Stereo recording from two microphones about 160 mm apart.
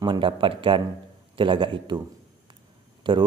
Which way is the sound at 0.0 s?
30° right (ahead or behind).